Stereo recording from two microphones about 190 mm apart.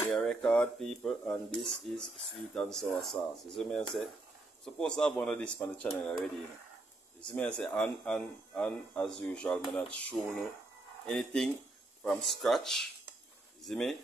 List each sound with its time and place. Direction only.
0.1 s speech: centre (ahead or behind)